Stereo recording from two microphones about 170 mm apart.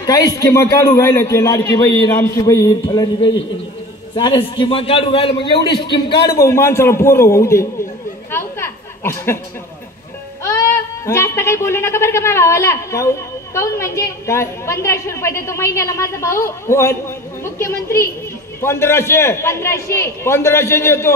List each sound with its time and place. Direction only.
0.0 s a man's voice: 20° left (ahead or behind)
8.3 s a sound: 15° left (ahead or behind)
10.4 s a woman's voice: 15° left (ahead or behind)